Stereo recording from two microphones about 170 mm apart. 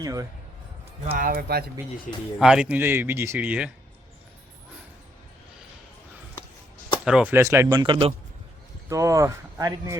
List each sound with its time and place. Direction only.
0.0 s speech: 20° right (ahead or behind)
1.1 s speech: 60° right (ahead or behind)
2.1 s speech: 45° left (ahead or behind)
2.4 s speech: 5° right (ahead or behind)
7.0 s speech: 5° right (ahead or behind); by 8.1 s 30° right (ahead or behind)
8.9 s speech: 20° right (ahead or behind)